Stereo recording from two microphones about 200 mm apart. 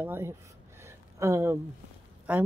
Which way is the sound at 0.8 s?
15° right (ahead or behind).